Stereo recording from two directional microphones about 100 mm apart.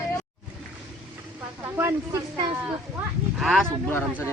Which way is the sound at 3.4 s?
5° left (ahead or behind).